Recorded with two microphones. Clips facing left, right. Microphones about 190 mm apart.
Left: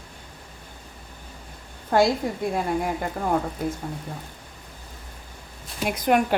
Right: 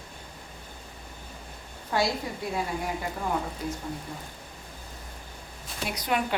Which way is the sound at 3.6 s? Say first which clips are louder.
Left 5 dB; 50° left (ahead or behind).